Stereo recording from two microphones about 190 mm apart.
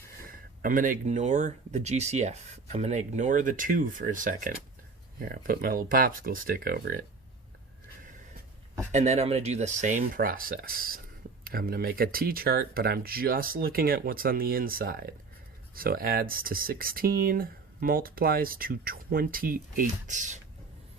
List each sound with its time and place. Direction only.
0.3 s speech: 45° right (ahead or behind)
8.9 s speech: 35° right (ahead or behind)